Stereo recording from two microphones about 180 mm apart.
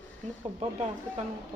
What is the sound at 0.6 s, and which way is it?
Speech, 35° right (ahead or behind).